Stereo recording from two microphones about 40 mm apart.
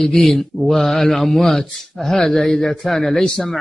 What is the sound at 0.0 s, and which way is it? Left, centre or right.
Speech, centre.